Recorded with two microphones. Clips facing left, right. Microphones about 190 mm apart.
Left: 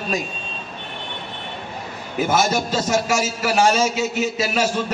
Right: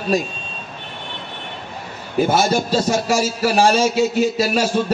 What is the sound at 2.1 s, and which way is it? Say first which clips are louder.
A man's voice: right 3 dB; 35° right (ahead or behind).